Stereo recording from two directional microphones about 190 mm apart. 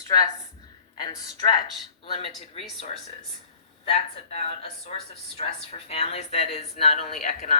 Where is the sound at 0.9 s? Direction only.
20° left (ahead or behind).